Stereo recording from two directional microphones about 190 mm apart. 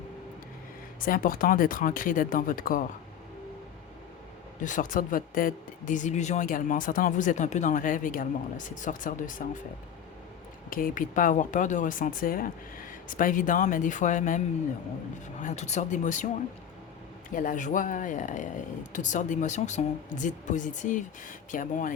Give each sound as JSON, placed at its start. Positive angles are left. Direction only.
{"t": 1.0, "sound": "speech", "side_deg": 50}
{"t": 4.6, "sound": "speech", "side_deg": 45}
{"t": 10.7, "sound": "speech", "side_deg": 45}
{"t": 17.3, "sound": "speech", "side_deg": 45}